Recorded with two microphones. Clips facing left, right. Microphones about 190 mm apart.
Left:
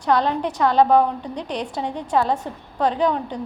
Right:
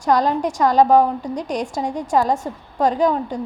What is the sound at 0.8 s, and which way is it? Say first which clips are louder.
Speech: right 2 dB; 10° right (ahead or behind).